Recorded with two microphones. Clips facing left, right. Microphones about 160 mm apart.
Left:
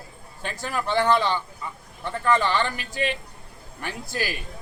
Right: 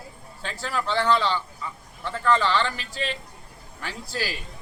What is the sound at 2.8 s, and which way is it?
Speech, 55° left (ahead or behind).